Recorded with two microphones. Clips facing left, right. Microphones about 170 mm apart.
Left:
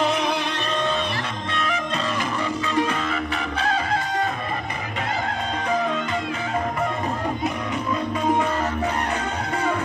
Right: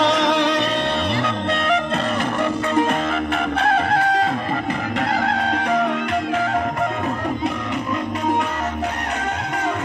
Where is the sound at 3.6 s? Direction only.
65° right (ahead or behind).